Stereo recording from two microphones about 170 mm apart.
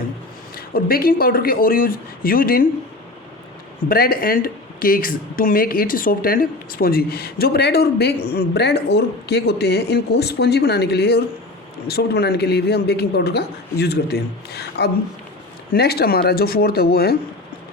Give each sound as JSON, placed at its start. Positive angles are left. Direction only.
{"t": 0.5, "sound": "a woman's voice", "side_deg": 60}
{"t": 3.8, "sound": "a woman's voice", "side_deg": 60}